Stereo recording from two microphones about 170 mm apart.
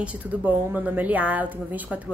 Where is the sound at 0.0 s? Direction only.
10° right (ahead or behind).